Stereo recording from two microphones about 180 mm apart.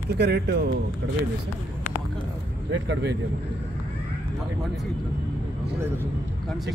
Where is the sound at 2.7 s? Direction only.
80° right.